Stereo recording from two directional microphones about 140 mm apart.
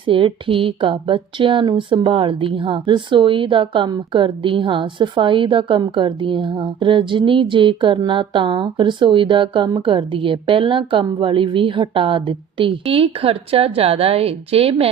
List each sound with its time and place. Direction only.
0.1 s speech: 40° right (ahead or behind)